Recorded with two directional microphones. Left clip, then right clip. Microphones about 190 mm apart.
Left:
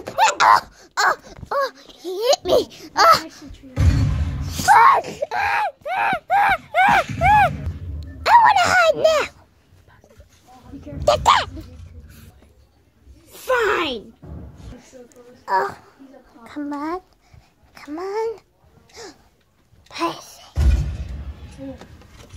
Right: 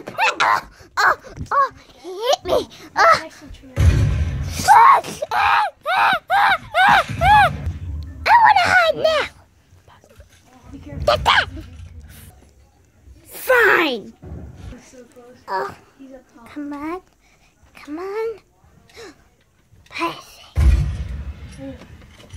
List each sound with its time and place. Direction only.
0.2 s a sound: 10° left (ahead or behind)
0.7 s dog: centre (ahead or behind)
1.6 s speech: 10° left (ahead or behind)
4.6 s speech: centre (ahead or behind)
5.0 s speech: 10° right (ahead or behind)
5.9 s a sound: 25° right (ahead or behind)
6.4 s speech: centre (ahead or behind)
8.0 s music: 5° left (ahead or behind)
9.0 s speech: centre (ahead or behind)
11.0 s speech: 5° right (ahead or behind)
13.3 s speech: 45° right (ahead or behind)
15.4 s a woman's voice: 10° left (ahead or behind)
18.9 s music: 5° left (ahead or behind)
19.9 s speech: 5° left (ahead or behind)